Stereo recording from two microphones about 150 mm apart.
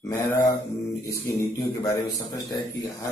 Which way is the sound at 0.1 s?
15° left (ahead or behind).